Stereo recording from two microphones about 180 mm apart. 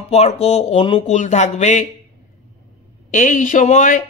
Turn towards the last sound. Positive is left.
turn(degrees=45)  # may be behind; listen again after turning